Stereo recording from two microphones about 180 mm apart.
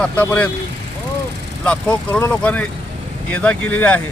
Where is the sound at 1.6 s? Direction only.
5° left (ahead or behind).